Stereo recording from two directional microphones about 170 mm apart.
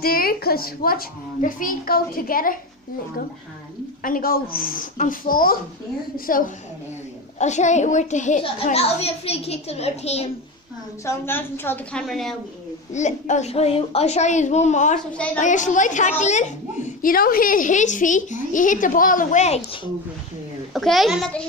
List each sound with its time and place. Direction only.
0.0 s a child's voice: 60° left (ahead or behind)
4.0 s a child's voice: 55° left (ahead or behind)
7.3 s a child's voice: 45° left (ahead or behind)
11.1 s a woman's voice: 15° left (ahead or behind)
12.9 s a woman's voice: 45° left (ahead or behind)
20.7 s a child's voice: centre (ahead or behind)